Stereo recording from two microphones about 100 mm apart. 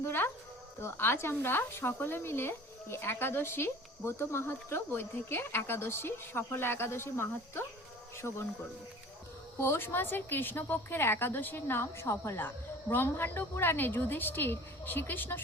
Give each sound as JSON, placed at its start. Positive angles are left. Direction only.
{"t": 0.0, "sound": "a sound", "side_deg": 20}
{"t": 0.8, "sound": "speech", "side_deg": 25}
{"t": 8.2, "sound": "speech", "side_deg": 15}
{"t": 9.6, "sound": "speech", "side_deg": 25}